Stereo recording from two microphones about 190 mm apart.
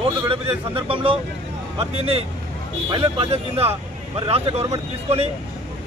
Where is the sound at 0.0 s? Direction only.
30° right (ahead or behind).